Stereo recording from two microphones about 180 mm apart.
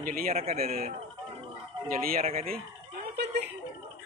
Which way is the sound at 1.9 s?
55° right (ahead or behind).